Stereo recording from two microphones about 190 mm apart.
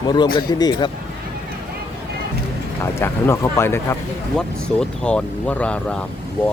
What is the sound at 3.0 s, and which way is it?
Speech, 15° left (ahead or behind).